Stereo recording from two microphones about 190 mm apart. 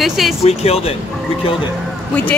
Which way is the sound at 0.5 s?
35° left (ahead or behind).